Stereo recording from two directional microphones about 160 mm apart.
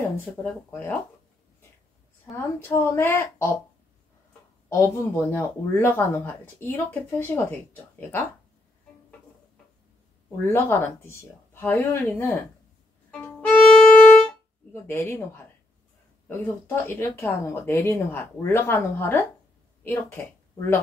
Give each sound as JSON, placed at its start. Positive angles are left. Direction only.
{"t": 0.7, "sound": "speech", "side_deg": 10}
{"t": 2.3, "sound": "speech", "side_deg": 15}
{"t": 4.6, "sound": "speech", "side_deg": 15}
{"t": 10.4, "sound": "speech", "side_deg": 15}
{"t": 13.1, "sound": "violin", "side_deg": 10}
{"t": 14.7, "sound": "speech", "side_deg": 15}